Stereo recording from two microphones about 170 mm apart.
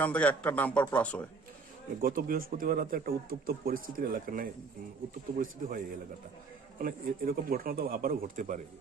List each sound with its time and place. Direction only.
0.0 s a man's voice: 10° left (ahead or behind)
2.0 s speech: 60° right (ahead or behind)